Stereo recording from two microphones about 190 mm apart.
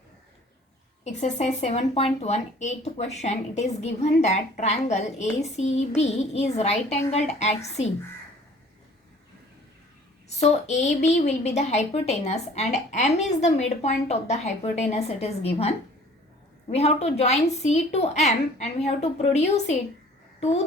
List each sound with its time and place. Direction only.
1.0 s a woman's voice: 40° left (ahead or behind)
10.2 s a woman's voice: 35° left (ahead or behind)